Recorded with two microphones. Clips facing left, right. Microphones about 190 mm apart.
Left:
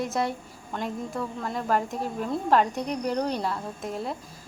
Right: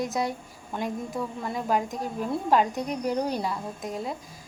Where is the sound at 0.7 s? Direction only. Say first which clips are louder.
Right 1 dB; 15° right (ahead or behind).